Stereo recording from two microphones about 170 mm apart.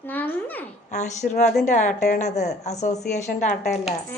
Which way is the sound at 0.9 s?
45° left (ahead or behind).